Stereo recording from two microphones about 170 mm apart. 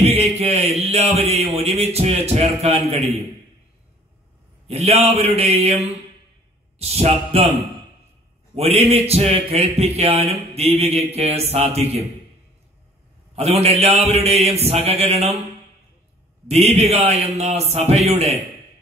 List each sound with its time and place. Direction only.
0.0 s speech: 40° right (ahead or behind)
4.6 s a man's voice: 35° right (ahead or behind)
6.8 s a man's voice: 35° right (ahead or behind)
8.5 s a man's voice: 40° right (ahead or behind)
13.4 s a man's voice: 40° right (ahead or behind)
16.4 s a man's voice: 40° right (ahead or behind)